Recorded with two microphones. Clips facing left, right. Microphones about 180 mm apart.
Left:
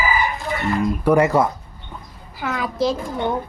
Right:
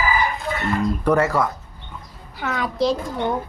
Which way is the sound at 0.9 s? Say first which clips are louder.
Left 3 dB; 10° left (ahead or behind).